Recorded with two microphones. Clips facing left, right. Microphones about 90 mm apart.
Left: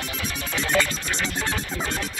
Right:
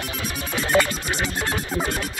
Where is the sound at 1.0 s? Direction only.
15° right (ahead or behind).